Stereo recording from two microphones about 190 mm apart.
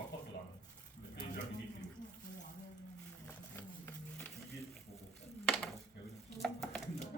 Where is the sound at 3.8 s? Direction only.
5° left (ahead or behind).